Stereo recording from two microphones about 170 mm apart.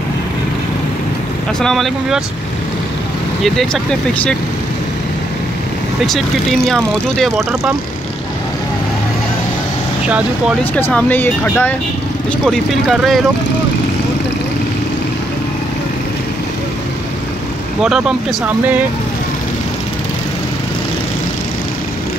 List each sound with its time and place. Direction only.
1.6 s speech: centre (ahead or behind)
3.4 s speech: 5° left (ahead or behind)
6.0 s speech: centre (ahead or behind)
10.0 s speech: 5° right (ahead or behind)
10.6 s speech: 10° left (ahead or behind)
17.8 s speech: 5° right (ahead or behind)